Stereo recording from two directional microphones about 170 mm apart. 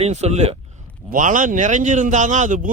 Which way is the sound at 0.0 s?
40° right (ahead or behind).